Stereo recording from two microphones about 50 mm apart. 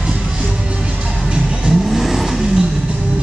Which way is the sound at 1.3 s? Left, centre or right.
Centre.